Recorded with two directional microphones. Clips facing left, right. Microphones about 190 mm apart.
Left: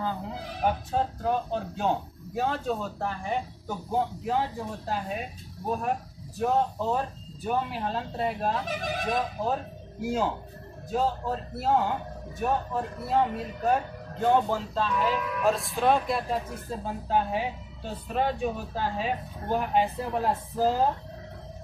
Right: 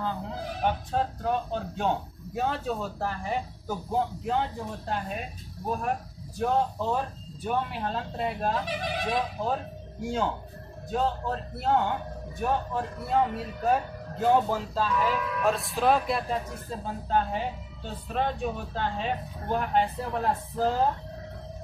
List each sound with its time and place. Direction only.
0.7 s a man's voice: 5° left (ahead or behind)
6.3 s a man's voice: 5° left (ahead or behind)
8.6 s speech: 45° left (ahead or behind)
10.0 s a man's voice: 5° left (ahead or behind)